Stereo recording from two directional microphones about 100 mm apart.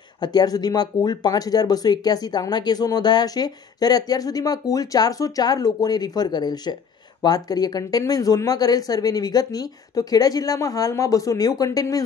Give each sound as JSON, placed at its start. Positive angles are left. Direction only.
{"t": 0.2, "sound": "speech", "side_deg": 45}